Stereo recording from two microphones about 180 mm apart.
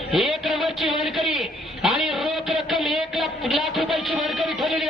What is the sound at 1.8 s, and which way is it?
Music, centre (ahead or behind).